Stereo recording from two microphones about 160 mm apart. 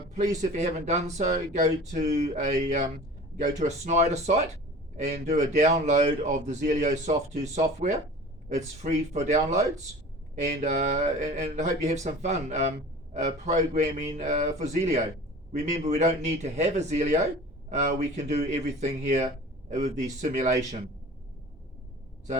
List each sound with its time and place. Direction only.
0.2 s speech: 45° right (ahead or behind)